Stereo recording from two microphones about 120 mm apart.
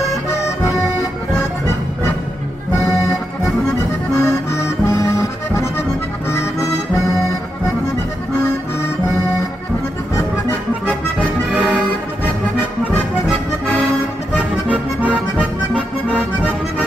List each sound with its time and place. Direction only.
4.2 s accordion: 20° left (ahead or behind)
11.5 s music: 10° right (ahead or behind)